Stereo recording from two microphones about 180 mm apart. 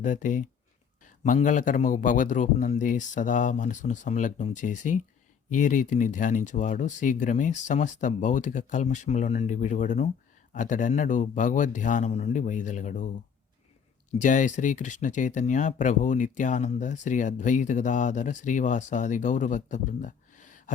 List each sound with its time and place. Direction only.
0.0 s speech: 45° left (ahead or behind)
14.2 s speech: 45° left (ahead or behind)